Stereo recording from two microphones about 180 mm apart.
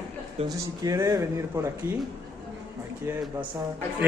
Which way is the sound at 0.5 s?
20° right (ahead or behind).